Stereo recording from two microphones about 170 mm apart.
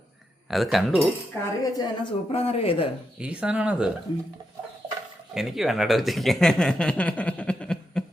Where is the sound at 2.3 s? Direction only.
35° left (ahead or behind).